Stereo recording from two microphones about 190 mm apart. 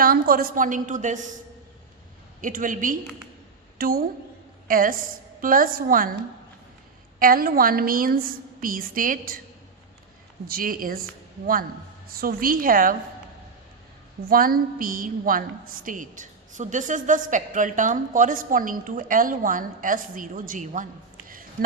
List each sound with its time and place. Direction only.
0.0 s a woman's voice: 50° right (ahead or behind)
2.4 s a woman's voice: 45° right (ahead or behind)
7.2 s a woman's voice: 50° right (ahead or behind)
10.4 s a woman's voice: 50° right (ahead or behind)
12.0 s a woman's voice: 50° right (ahead or behind)
14.3 s a woman's voice: 50° right (ahead or behind)